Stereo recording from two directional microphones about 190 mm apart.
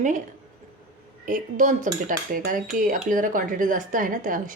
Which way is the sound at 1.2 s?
45° right (ahead or behind).